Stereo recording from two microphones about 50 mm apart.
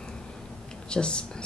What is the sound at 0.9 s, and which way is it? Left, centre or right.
Speech, centre.